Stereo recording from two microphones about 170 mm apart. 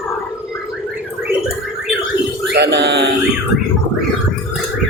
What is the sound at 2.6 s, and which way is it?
Mantra, 85° right.